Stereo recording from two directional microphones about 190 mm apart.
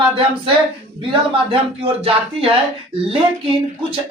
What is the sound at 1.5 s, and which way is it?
Speech, 30° right (ahead or behind).